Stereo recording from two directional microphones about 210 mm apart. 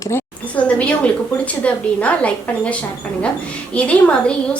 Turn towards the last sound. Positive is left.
turn(degrees=5)  # may be behind; listen again after turning